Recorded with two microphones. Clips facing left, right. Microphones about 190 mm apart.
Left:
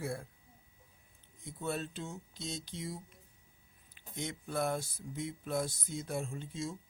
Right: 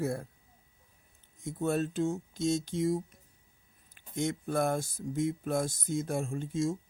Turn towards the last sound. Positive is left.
turn(degrees=-45)  # may be behind; listen again after turning